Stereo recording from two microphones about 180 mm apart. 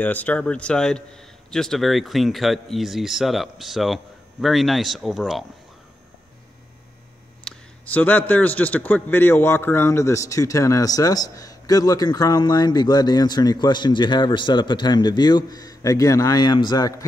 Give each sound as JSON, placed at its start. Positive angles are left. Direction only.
{"t": 0.0, "sound": "a man's voice", "side_deg": 10}
{"t": 7.4, "sound": "a man's voice", "side_deg": 10}